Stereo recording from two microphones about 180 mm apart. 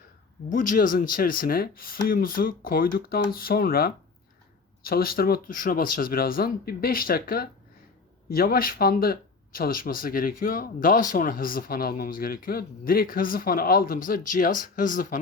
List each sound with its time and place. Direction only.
0.5 s speech: 50° left (ahead or behind)